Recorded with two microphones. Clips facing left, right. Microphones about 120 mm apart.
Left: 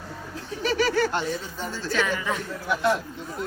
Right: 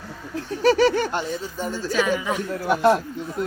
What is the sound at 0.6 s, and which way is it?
Speech, 40° right (ahead or behind).